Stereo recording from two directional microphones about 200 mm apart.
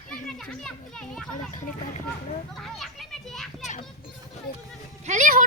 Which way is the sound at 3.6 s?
35° left (ahead or behind).